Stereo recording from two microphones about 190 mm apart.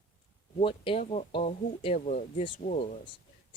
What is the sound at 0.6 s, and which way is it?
Speech, 30° left (ahead or behind).